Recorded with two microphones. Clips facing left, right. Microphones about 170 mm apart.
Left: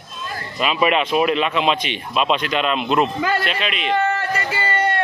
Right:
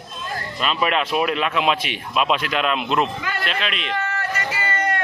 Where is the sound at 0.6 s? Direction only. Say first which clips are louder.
Left 4 dB; 5° left (ahead or behind).